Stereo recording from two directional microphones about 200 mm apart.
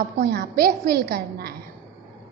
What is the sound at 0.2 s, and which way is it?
A woman's voice, 50° right (ahead or behind).